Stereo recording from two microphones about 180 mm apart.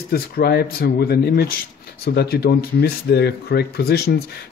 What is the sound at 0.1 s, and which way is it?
Speech, 60° left (ahead or behind).